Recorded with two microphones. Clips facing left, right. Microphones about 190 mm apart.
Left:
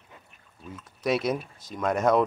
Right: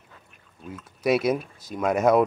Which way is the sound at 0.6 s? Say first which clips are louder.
Right 4 dB; centre (ahead or behind).